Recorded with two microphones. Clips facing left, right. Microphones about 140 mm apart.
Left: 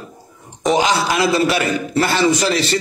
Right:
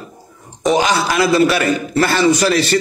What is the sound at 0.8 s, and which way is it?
A man's voice, 25° left (ahead or behind).